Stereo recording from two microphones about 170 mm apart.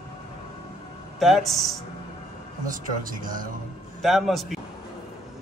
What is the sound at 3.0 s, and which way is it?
Speech, 50° right (ahead or behind).